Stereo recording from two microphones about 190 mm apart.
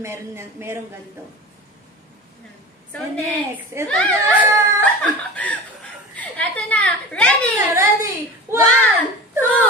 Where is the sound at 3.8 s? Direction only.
5° left (ahead or behind).